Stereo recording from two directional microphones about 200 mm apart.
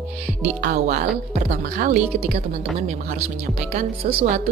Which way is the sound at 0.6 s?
45° right (ahead or behind).